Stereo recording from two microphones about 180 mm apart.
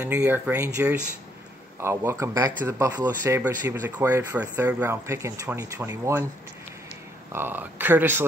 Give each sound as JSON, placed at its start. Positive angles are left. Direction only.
{"t": 0.2, "sound": "speech", "side_deg": -15}
{"t": 7.3, "sound": "speech", "side_deg": -10}